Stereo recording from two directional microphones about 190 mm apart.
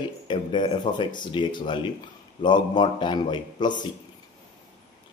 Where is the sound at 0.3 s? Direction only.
25° left (ahead or behind).